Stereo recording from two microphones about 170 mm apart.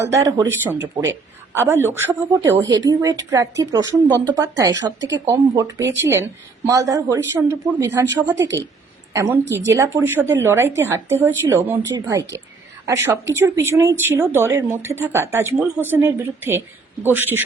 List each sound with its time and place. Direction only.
0.0 s speech: 15° right (ahead or behind)
4.9 s a woman's voice: 90° right
5.2 s speech: 20° right (ahead or behind)
9.1 s speech: 20° right (ahead or behind)
9.4 s a woman's voice: 90° right
9.7 s speech: 15° right (ahead or behind)